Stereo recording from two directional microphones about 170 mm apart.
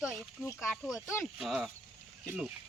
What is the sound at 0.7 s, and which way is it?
Speech, centre (ahead or behind).